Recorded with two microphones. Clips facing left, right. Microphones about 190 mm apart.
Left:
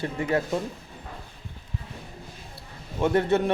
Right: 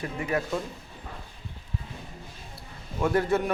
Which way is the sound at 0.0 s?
25° left (ahead or behind).